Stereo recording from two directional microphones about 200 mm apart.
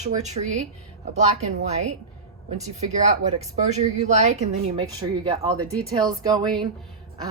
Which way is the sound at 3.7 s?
35° right (ahead or behind).